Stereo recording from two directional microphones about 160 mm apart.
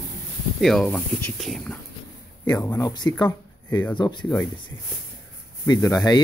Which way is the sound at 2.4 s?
10° left (ahead or behind).